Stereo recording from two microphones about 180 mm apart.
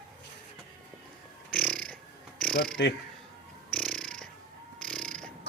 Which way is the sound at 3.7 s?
5° left (ahead or behind).